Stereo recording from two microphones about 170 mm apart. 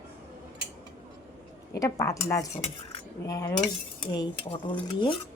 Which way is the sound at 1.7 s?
20° left (ahead or behind).